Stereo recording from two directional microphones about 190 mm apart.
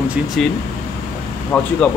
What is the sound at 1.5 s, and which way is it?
Speech, 5° left (ahead or behind).